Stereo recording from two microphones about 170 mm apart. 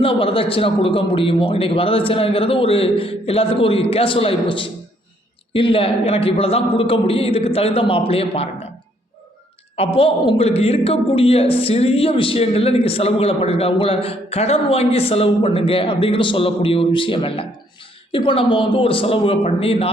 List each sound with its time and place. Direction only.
0.0 s a man's voice: 30° left (ahead or behind)
9.7 s a man's voice: 35° left (ahead or behind)